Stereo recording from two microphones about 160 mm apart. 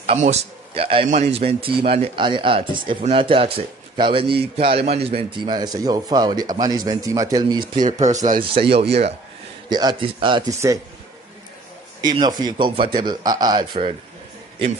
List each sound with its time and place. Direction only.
0.0 s a man's voice: 45° right (ahead or behind); by 8.3 s 20° right (ahead or behind)
8.5 s a man's voice: 35° right (ahead or behind)
9.7 s speech: 25° right (ahead or behind)
12.0 s speech: 25° right (ahead or behind)